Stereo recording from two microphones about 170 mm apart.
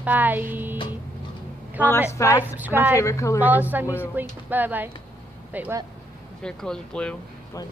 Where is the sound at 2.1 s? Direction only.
15° left (ahead or behind).